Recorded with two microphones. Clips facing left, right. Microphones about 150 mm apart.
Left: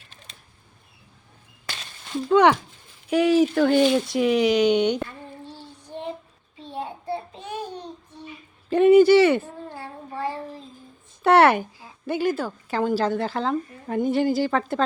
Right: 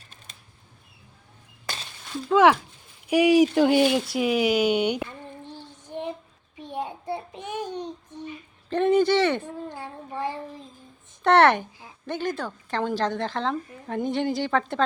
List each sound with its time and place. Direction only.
2.3 s a woman's voice: centre (ahead or behind)
3.1 s speech: 10° right (ahead or behind)
5.5 s child singing: 15° right (ahead or behind)
8.7 s a sound: 10° left (ahead or behind)
9.6 s child singing: 20° right (ahead or behind)
11.2 s a sound: 5° left (ahead or behind)
12.0 s a woman's voice: 10° left (ahead or behind)